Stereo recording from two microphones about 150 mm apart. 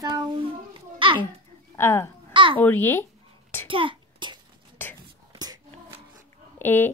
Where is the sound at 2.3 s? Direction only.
35° right (ahead or behind).